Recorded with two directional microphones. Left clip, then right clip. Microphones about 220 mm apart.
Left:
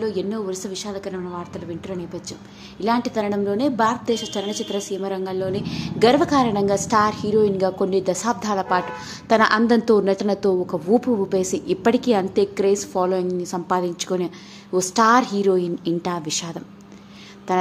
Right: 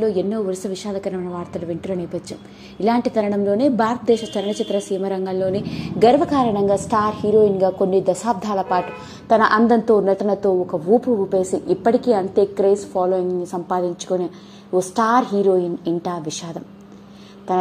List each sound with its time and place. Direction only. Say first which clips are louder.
0.0 s a woman's voice: right 5 dB; 10° right (ahead or behind)